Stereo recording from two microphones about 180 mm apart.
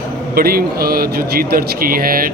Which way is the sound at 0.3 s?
55° right (ahead or behind).